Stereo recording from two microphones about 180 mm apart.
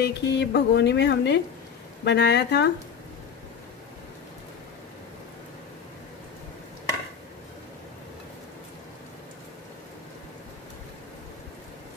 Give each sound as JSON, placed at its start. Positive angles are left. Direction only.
{"t": 0.0, "sound": "speech", "side_deg": 70}